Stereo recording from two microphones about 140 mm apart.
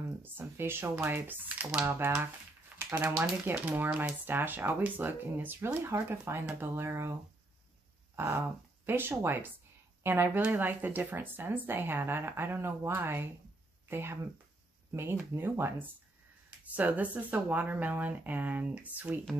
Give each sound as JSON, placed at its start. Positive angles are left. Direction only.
{"t": 0.2, "sound": "speech", "side_deg": -15}
{"t": 8.2, "sound": "speech", "side_deg": -15}